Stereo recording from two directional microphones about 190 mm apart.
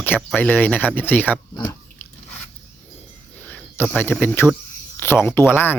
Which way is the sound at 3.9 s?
10° left (ahead or behind).